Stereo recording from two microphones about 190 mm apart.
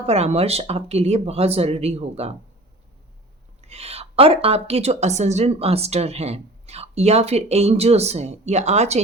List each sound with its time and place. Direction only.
0.0 s a woman's voice: 35° right (ahead or behind)
3.6 s a woman's voice: 35° right (ahead or behind)